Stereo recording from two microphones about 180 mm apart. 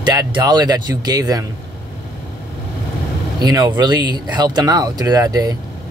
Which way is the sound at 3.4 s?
20° right (ahead or behind).